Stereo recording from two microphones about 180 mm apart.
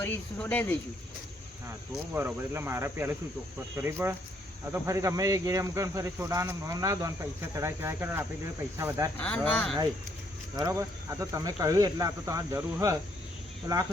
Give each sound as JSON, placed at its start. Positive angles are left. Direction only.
{"t": 0.0, "sound": "speech", "side_deg": 10}
{"t": 2.1, "sound": "speech", "side_deg": -10}
{"t": 9.1, "sound": "speech", "side_deg": 5}
{"t": 10.6, "sound": "speech", "side_deg": -15}